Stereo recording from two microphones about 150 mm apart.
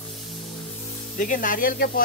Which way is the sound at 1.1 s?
65° left (ahead or behind).